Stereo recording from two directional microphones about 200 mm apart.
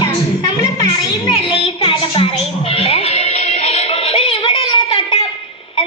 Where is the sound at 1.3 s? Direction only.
30° left (ahead or behind).